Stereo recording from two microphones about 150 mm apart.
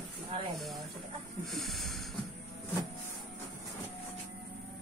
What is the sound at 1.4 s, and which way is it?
Snake, centre (ahead or behind).